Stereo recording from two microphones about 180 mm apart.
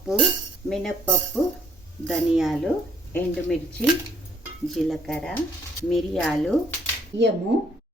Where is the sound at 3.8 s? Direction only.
5° left (ahead or behind).